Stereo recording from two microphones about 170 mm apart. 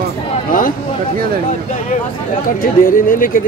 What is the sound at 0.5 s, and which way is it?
Speech, 55° left (ahead or behind).